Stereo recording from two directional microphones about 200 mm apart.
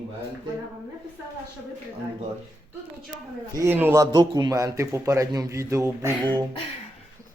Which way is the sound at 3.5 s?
10° right (ahead or behind).